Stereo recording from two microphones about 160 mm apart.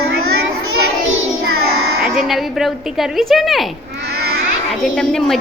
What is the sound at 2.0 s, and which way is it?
A woman's voice, centre (ahead or behind).